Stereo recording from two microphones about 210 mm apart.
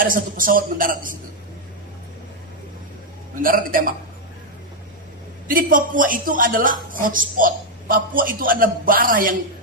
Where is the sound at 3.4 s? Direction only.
40° right (ahead or behind).